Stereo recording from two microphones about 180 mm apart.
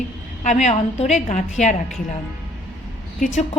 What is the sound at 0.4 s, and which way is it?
A woman's voice, 40° left (ahead or behind).